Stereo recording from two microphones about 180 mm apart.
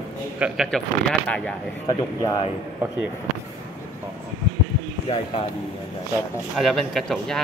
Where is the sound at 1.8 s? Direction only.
20° left (ahead or behind).